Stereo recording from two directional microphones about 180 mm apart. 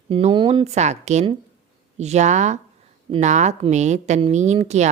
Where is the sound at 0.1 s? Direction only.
30° right (ahead or behind).